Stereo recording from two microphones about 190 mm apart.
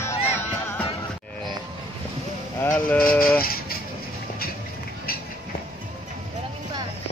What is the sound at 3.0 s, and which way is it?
Speech, 50° left (ahead or behind).